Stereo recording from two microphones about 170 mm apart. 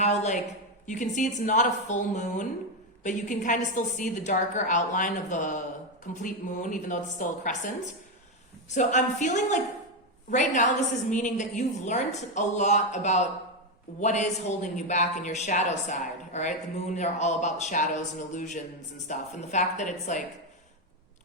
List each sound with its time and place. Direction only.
0.0 s a woman's voice: 40° left (ahead or behind)
8.7 s a man's voice: 45° left (ahead or behind)